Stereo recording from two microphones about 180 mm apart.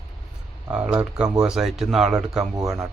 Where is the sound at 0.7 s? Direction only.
5° right (ahead or behind).